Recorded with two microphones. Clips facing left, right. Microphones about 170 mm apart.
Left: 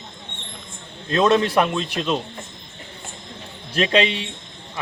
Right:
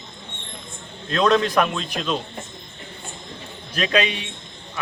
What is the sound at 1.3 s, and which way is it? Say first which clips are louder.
Speech: even; 30° left (ahead or behind).